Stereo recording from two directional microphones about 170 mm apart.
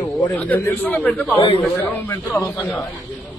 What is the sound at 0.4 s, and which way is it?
A man's voice, 10° left (ahead or behind).